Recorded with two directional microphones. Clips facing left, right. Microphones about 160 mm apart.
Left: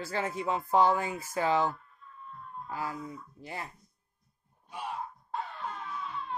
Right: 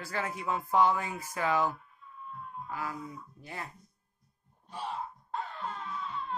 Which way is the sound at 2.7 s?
30° left (ahead or behind).